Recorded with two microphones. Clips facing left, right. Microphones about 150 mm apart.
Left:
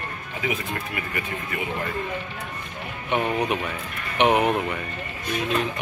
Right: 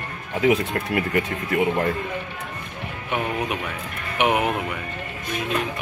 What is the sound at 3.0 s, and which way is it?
Speech, 5° right (ahead or behind).